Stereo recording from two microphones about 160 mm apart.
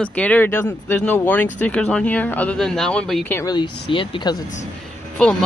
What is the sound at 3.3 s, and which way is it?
Speech, 25° left (ahead or behind).